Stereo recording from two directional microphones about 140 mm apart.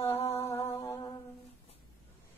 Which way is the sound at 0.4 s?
15° left (ahead or behind).